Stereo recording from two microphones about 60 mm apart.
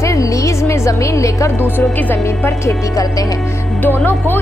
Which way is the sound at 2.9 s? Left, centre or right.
Left.